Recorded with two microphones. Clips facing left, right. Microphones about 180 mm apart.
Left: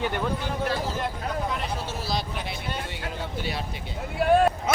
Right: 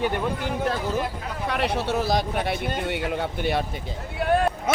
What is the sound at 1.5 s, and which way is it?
A man's voice, 70° right (ahead or behind).